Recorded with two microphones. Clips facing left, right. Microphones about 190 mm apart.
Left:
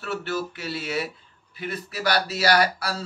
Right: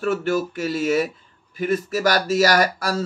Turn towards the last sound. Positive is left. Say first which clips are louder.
# right 3 dB
turn(degrees=-45)  # may be behind; listen again after turning